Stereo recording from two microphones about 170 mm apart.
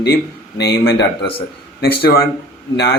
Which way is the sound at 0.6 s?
65° left (ahead or behind).